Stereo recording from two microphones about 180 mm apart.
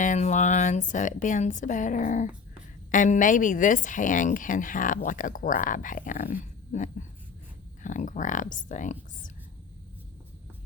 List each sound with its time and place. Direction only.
0.0 s speech: 45° left (ahead or behind)